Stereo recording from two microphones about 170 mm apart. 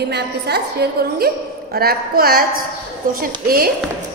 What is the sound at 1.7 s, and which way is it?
A woman's voice, 65° right (ahead or behind).